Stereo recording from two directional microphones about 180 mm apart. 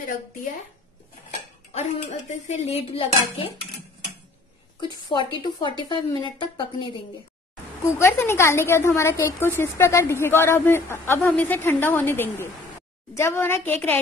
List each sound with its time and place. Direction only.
2.4 s speech: 40° left (ahead or behind)
4.7 s a woman's voice: 25° left (ahead or behind)
7.8 s a woman's voice: 15° left (ahead or behind)